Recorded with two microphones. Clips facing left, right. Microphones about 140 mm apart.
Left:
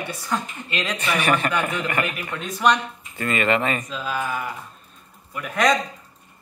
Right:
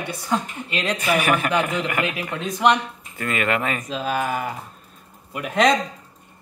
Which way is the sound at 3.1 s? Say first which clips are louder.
Left 2 dB; centre (ahead or behind).